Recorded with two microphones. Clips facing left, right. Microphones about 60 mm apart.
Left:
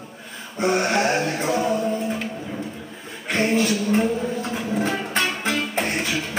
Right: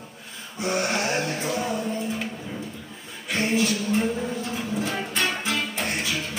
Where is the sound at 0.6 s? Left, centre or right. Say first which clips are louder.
Left 5 dB; left.